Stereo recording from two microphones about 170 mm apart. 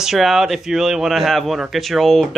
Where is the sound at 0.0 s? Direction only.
Centre (ahead or behind).